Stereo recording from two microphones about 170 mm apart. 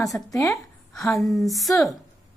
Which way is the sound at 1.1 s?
Centre (ahead or behind).